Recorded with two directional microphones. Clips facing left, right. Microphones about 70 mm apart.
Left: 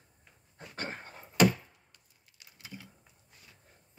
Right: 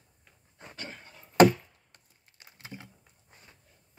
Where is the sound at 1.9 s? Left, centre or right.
Right.